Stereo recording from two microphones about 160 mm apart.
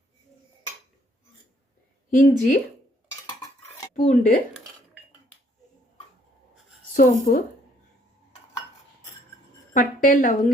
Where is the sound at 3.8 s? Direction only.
50° left (ahead or behind).